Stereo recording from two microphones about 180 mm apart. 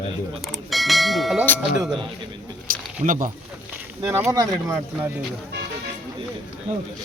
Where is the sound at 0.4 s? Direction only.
Centre (ahead or behind).